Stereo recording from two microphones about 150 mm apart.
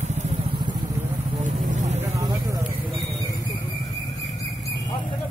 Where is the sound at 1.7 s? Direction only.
50° right (ahead or behind).